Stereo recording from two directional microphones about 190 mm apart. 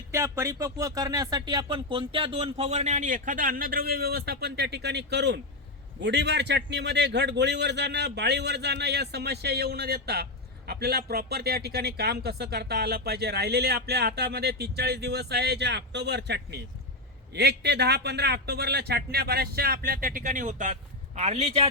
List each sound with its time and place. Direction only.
0.1 s speech: 15° right (ahead or behind); by 21.7 s 35° right (ahead or behind)